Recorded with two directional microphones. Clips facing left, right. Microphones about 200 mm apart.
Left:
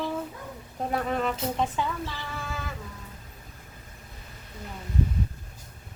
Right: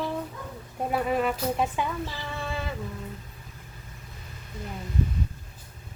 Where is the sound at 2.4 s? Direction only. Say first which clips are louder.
Right 6 dB; 25° right (ahead or behind).